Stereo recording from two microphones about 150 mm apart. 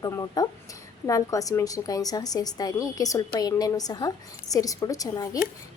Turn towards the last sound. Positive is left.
turn(degrees=25)  # may be behind; listen again after turning